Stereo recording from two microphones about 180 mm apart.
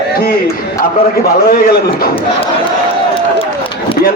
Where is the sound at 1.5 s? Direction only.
55° left (ahead or behind).